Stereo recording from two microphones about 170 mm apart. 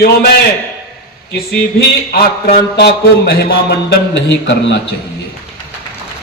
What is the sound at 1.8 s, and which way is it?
A man's voice, 65° left (ahead or behind).